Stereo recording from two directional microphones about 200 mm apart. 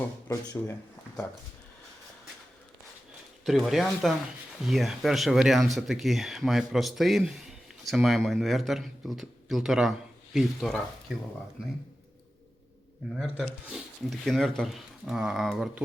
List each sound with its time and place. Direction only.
0.3 s speech: 15° left (ahead or behind)
3.4 s speech: centre (ahead or behind)
13.1 s speech: 5° right (ahead or behind)